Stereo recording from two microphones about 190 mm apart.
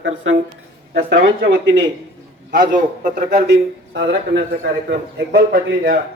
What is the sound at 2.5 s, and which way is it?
Speech, 45° right (ahead or behind).